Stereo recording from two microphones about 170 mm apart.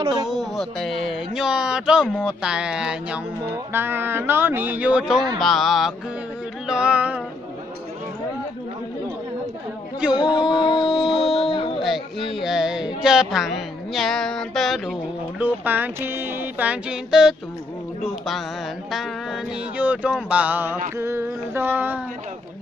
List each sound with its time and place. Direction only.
0.0 s speech: 25° right (ahead or behind)
0.3 s speech: centre (ahead or behind)
3.7 s music: 15° right (ahead or behind)
5.4 s speech: centre (ahead or behind)
6.7 s music: 5° right (ahead or behind)
10.0 s speech: 5° right (ahead or behind)
10.8 s a sound: centre (ahead or behind)
11.3 s music: 30° left (ahead or behind)
12.4 s speech: centre (ahead or behind)
15.3 s music: 10° right (ahead or behind)
18.0 s speech: centre (ahead or behind)
18.9 s music: centre (ahead or behind)